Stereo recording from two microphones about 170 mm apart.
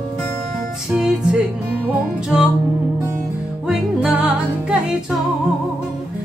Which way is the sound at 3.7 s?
5° right (ahead or behind).